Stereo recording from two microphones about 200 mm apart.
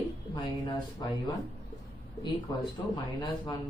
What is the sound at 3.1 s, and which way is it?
Speech, 20° left (ahead or behind).